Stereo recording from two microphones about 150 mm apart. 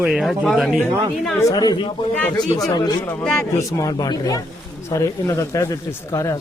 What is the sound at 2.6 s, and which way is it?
Speech, 30° left (ahead or behind).